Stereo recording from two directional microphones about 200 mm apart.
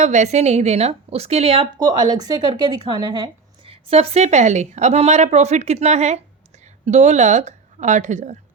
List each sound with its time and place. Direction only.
0.0 s a woman's voice: 35° right (ahead or behind)